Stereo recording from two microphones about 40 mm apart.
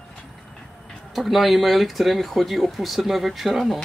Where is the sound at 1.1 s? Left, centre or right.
Centre.